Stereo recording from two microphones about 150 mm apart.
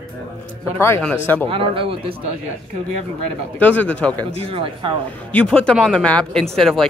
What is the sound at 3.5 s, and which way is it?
Speech, 10° left (ahead or behind).